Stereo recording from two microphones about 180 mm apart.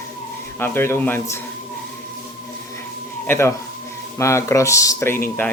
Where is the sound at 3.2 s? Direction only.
15° left (ahead or behind).